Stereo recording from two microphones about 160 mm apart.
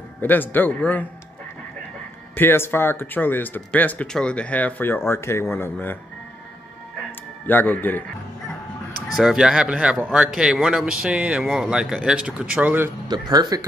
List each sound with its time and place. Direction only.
0.2 s speech: 10° left (ahead or behind)
2.3 s speech: 15° left (ahead or behind)
7.1 s music: 10° left (ahead or behind)
9.1 s a man's voice: 5° right (ahead or behind)
13.1 s speech: 25° right (ahead or behind)